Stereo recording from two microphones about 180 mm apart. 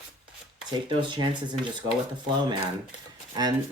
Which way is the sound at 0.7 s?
25° right (ahead or behind).